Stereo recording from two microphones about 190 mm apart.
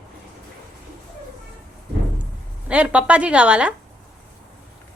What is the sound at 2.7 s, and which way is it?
A woman's voice, 5° right (ahead or behind).